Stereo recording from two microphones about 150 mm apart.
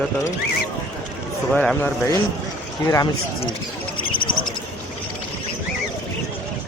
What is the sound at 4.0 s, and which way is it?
Bird, 35° left (ahead or behind).